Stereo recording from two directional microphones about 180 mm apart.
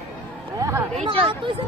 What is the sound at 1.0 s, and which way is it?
Speech, 30° right (ahead or behind).